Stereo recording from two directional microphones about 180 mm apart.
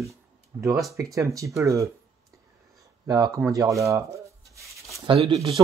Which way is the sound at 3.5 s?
15° right (ahead or behind).